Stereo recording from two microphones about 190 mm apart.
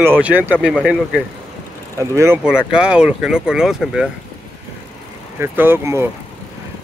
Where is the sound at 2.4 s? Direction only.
5° right (ahead or behind).